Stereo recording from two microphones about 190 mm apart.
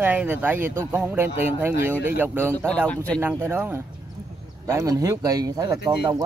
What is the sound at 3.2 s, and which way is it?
Speech, 10° right (ahead or behind).